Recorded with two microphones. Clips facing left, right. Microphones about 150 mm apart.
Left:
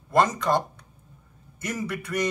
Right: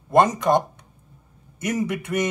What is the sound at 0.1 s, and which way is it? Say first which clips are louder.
Speech: right 4 dB; 20° right (ahead or behind).